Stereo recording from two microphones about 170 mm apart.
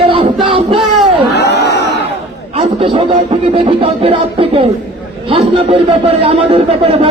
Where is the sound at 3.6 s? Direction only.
35° right (ahead or behind).